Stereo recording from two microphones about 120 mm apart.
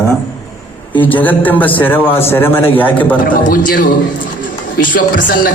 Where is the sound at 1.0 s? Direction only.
15° left (ahead or behind).